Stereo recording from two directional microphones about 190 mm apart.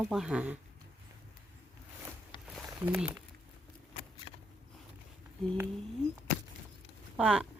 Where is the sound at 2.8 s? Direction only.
10° right (ahead or behind).